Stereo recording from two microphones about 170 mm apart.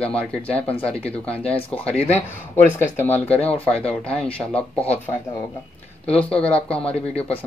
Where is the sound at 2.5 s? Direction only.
15° left (ahead or behind).